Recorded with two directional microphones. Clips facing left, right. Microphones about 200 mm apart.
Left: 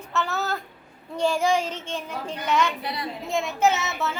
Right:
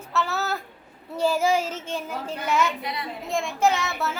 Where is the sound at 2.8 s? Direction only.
35° left (ahead or behind).